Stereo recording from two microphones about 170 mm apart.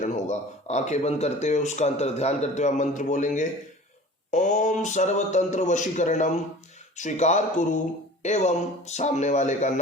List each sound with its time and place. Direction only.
0.0 s speech: 45° left (ahead or behind)